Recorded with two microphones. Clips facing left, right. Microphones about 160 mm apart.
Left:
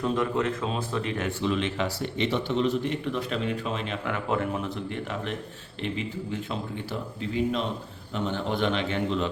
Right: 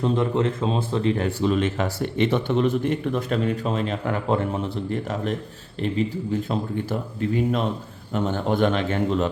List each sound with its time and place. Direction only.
0.0 s a man's voice: 25° right (ahead or behind); by 9.3 s 45° right (ahead or behind)